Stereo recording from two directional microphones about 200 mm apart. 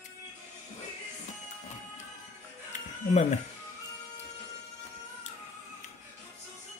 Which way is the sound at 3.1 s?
35° left (ahead or behind).